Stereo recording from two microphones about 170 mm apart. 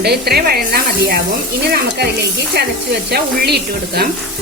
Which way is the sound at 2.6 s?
70° right (ahead or behind).